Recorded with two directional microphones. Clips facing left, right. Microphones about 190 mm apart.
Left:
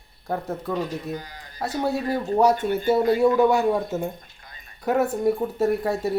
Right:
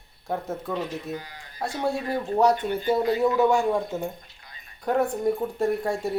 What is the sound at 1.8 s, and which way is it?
Speech, 5° left (ahead or behind).